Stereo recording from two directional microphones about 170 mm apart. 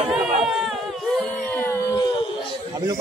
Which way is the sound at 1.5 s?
15° left (ahead or behind).